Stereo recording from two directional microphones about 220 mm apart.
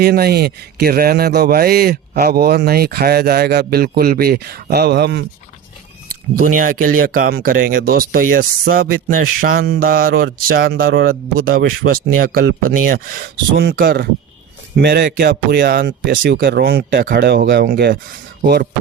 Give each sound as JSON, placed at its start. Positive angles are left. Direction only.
{"t": 0.0, "sound": "a man's voice", "side_deg": -45}
{"t": 6.3, "sound": "a man's voice", "side_deg": -40}